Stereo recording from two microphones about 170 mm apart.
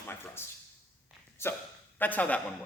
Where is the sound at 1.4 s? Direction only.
15° left (ahead or behind).